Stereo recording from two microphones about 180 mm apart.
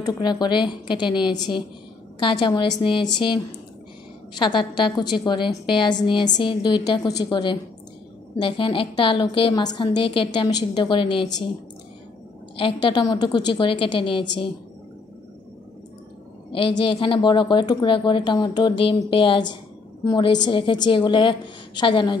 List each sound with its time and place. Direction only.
0.0 s a woman's voice: 20° left (ahead or behind)
4.4 s a woman's voice: 25° left (ahead or behind)
12.5 s a woman's voice: 30° left (ahead or behind)
16.8 s a woman's voice: 30° left (ahead or behind)